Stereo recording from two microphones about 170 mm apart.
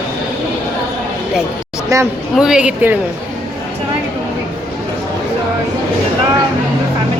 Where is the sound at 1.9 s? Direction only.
20° right (ahead or behind).